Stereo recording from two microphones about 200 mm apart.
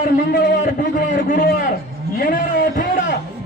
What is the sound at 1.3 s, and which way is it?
A man's voice, 40° left (ahead or behind).